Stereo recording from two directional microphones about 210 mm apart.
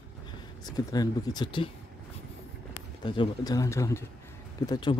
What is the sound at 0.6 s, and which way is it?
Speech, 20° left (ahead or behind).